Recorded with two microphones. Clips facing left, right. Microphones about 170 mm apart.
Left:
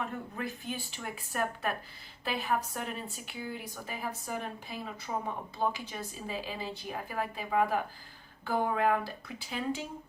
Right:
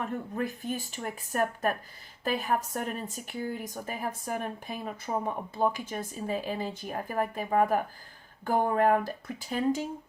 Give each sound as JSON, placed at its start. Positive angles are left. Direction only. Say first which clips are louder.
{"t": 0.0, "sound": "speech", "louder": "right 5 dB", "side_deg": -45}